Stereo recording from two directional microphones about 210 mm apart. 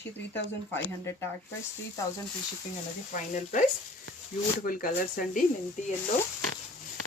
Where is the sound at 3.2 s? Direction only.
35° left (ahead or behind).